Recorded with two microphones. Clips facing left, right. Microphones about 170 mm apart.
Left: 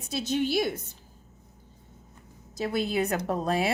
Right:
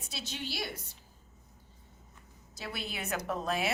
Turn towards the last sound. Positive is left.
turn(degrees=35)  # may be behind; listen again after turning